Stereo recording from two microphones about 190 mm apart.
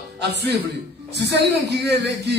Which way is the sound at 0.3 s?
65° right (ahead or behind).